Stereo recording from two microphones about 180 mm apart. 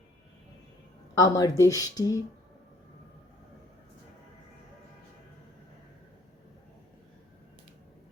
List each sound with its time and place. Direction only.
1.2 s speech: 20° left (ahead or behind)